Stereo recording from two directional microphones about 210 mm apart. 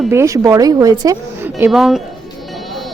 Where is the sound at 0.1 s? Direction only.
15° right (ahead or behind).